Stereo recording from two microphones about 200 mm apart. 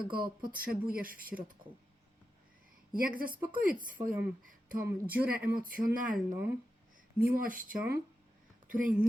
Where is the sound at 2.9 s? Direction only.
45° right (ahead or behind).